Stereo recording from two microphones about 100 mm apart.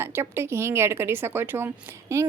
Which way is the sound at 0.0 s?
25° right (ahead or behind).